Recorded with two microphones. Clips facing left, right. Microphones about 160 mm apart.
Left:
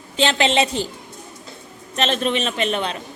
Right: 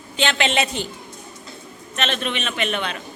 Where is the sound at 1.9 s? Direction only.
35° left (ahead or behind).